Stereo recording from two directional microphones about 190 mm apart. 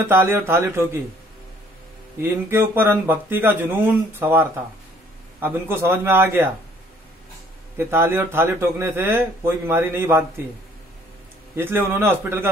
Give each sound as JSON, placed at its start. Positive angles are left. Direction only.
{"t": 0.0, "sound": "speech", "side_deg": -10}
{"t": 2.2, "sound": "speech", "side_deg": -10}
{"t": 7.7, "sound": "speech", "side_deg": -10}
{"t": 11.5, "sound": "speech", "side_deg": -10}